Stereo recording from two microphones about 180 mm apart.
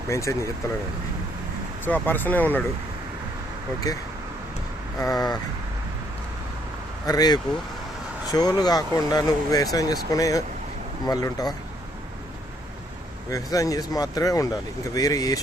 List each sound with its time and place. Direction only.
0.1 s speech: 15° left (ahead or behind)
1.8 s speech: 10° left (ahead or behind)
3.9 s speech: 20° left (ahead or behind)
7.0 s speech: 20° left (ahead or behind)
13.3 s speech: 20° left (ahead or behind)